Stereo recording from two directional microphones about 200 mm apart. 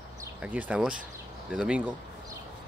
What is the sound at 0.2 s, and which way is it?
Speech, 10° right (ahead or behind).